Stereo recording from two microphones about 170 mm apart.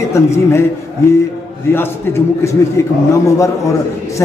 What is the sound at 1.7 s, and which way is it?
Speech, 15° left (ahead or behind).